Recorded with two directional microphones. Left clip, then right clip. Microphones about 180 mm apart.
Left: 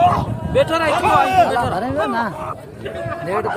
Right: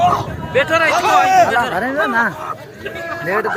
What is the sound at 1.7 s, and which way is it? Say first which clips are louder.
Speech: right 3 dB; 15° right (ahead or behind).